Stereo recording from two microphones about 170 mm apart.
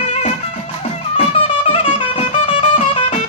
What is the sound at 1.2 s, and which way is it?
Music, 35° left (ahead or behind).